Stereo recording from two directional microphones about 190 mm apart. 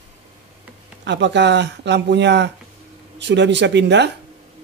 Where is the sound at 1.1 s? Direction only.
65° right (ahead or behind).